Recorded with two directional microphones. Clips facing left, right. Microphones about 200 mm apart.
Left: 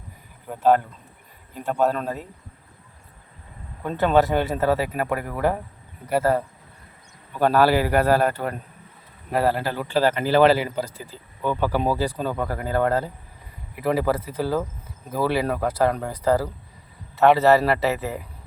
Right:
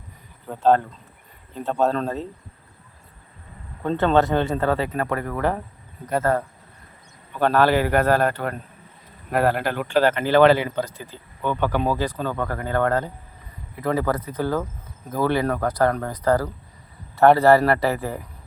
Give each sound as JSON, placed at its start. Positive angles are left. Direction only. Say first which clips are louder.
{"t": 0.4, "sound": "speech", "louder": "right 1 dB", "side_deg": 10}
{"t": 3.8, "sound": "speech", "louder": "even", "side_deg": 10}
{"t": 9.3, "sound": "speech", "louder": "right 1 dB", "side_deg": -55}
{"t": 9.8, "sound": "speech", "louder": "right 2 dB", "side_deg": 5}
{"t": 10.2, "sound": "speech", "louder": "right 1 dB", "side_deg": 35}
{"t": 11.4, "sound": "a man's voice", "louder": "even", "side_deg": 5}